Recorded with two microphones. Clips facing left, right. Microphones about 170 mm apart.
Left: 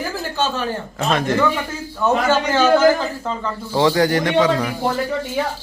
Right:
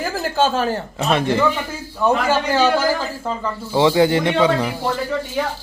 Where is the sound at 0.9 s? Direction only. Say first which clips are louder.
Even; 25° right (ahead or behind).